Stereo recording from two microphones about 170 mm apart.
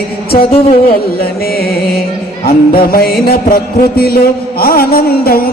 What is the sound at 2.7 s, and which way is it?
Mantra, 60° left (ahead or behind).